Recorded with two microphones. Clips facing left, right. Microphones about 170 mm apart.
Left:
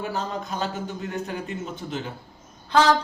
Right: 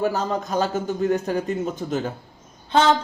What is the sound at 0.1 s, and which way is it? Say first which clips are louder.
A man's voice: right 5 dB; 45° right (ahead or behind).